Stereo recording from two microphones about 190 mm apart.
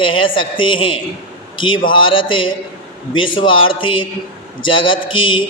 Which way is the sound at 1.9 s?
25° left (ahead or behind).